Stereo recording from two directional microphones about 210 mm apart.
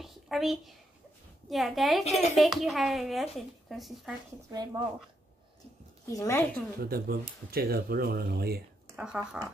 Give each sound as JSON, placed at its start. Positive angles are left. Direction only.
{"t": 0.0, "sound": "a sound", "side_deg": 0}
{"t": 1.5, "sound": "speech", "side_deg": 0}
{"t": 4.5, "sound": "speech", "side_deg": -20}
{"t": 6.0, "sound": "a woman's voice", "side_deg": 15}
{"t": 6.8, "sound": "speech", "side_deg": -45}
{"t": 8.9, "sound": "speech", "side_deg": -5}